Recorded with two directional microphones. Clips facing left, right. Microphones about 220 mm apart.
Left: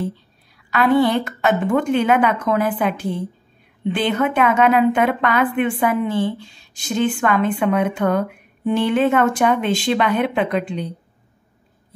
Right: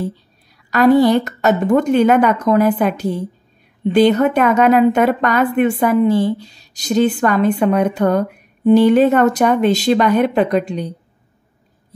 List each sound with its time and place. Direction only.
0.7 s a woman's voice: 40° right (ahead or behind)